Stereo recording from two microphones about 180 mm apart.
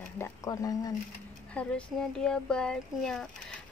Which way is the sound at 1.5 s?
5° left (ahead or behind).